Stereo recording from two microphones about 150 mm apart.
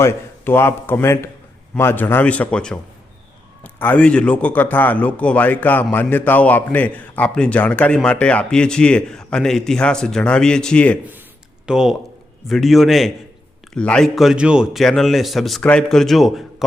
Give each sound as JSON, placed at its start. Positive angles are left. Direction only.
{"t": 0.0, "sound": "a man's voice", "side_deg": 15}
{"t": 11.6, "sound": "a man's voice", "side_deg": -5}